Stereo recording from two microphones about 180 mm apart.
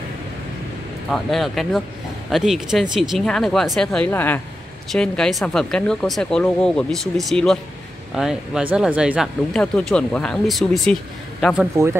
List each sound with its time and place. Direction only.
1.1 s speech: centre (ahead or behind)
11.7 s speech: 15° right (ahead or behind)